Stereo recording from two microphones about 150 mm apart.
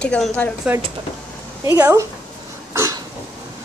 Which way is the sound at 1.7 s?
20° right (ahead or behind).